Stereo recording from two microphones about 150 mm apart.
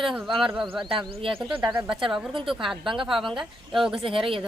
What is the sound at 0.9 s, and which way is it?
Speech, 35° right (ahead or behind).